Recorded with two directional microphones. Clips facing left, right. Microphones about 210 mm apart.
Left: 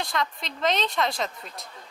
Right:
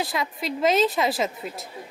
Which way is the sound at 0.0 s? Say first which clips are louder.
Right 2 dB; 5° right (ahead or behind).